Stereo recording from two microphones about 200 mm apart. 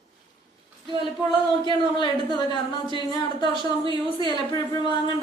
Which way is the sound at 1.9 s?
20° left (ahead or behind).